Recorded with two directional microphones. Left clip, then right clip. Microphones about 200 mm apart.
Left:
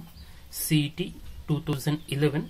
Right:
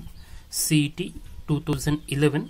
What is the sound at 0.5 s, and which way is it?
A woman's voice, 30° right (ahead or behind).